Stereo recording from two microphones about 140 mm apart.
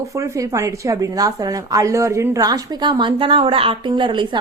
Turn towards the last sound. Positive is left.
turn(degrees=-35)  # may be behind; listen again after turning